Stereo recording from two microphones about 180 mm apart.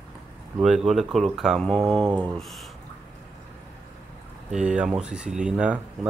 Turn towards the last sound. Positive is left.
turn(degrees=-5)  # may be behind; listen again after turning